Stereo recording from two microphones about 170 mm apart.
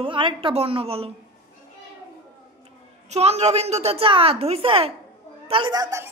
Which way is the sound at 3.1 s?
40° right (ahead or behind).